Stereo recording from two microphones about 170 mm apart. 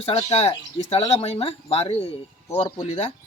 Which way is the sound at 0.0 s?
35° left (ahead or behind).